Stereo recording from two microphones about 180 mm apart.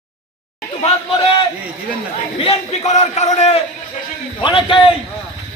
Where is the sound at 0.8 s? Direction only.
30° left (ahead or behind).